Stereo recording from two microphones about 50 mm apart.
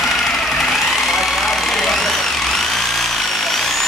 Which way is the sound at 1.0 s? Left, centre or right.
Centre.